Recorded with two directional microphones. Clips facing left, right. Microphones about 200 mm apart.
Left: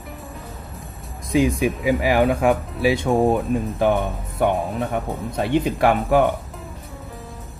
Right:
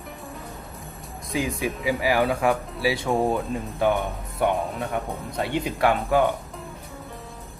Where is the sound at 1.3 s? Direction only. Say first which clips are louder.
Left 8 dB; 20° left (ahead or behind).